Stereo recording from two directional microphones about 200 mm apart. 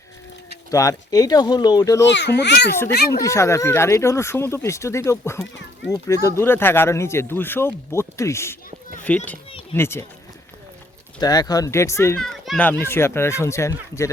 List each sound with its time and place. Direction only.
0.7 s speech: 15° left (ahead or behind)
2.0 s a child's voice: 60° left (ahead or behind)
3.2 s speech: 15° left (ahead or behind)
11.2 s a child's voice: 20° left (ahead or behind)